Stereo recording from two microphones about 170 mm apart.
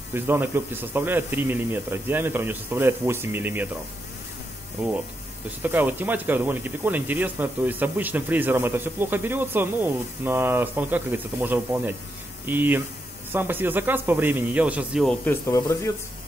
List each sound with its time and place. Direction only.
0.1 s speech: 15° right (ahead or behind)
5.6 s speech: 10° right (ahead or behind)
15.0 s speech: 15° left (ahead or behind)